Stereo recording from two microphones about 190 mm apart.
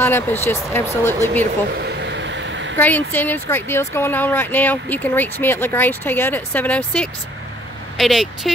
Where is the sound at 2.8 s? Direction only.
10° left (ahead or behind).